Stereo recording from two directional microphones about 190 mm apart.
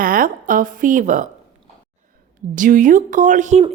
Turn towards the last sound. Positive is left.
turn(degrees=-40)  # may be behind; listen again after turning